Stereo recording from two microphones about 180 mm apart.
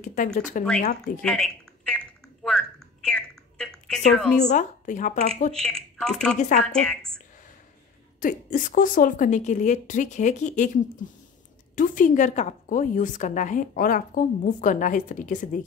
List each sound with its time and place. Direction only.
0.0 s speech: 45° left (ahead or behind)
1.2 s typing: 5° left (ahead or behind)
4.4 s speech: 45° left (ahead or behind)
5.6 s a woman's voice: 5° left (ahead or behind)
8.2 s speech: 45° left (ahead or behind)
11.7 s speech: 45° left (ahead or behind)